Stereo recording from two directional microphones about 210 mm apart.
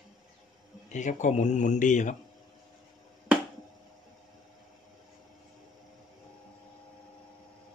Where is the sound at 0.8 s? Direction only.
35° left (ahead or behind).